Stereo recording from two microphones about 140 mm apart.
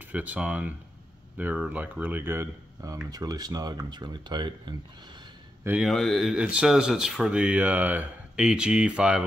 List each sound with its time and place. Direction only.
0.0 s speech: 10° right (ahead or behind); by 4.7 s 35° right (ahead or behind)
5.6 s a man's voice: 15° right (ahead or behind)
5.9 s speech: centre (ahead or behind)